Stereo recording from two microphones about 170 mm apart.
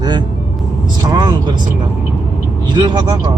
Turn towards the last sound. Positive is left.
turn(degrees=-25)  # may be behind; listen again after turning